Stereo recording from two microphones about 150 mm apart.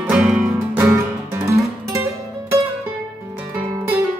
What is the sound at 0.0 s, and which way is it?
Music, 5° right (ahead or behind).